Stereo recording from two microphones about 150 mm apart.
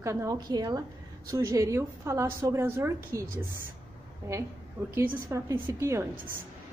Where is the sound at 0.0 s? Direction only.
20° right (ahead or behind).